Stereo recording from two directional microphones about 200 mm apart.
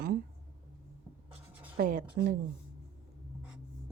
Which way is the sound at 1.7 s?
45° right (ahead or behind).